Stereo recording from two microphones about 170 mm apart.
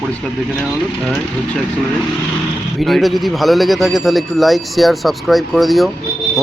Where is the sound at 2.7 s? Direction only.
Centre (ahead or behind).